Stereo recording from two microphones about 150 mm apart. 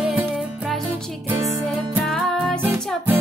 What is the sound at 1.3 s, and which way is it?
Music, 20° right (ahead or behind).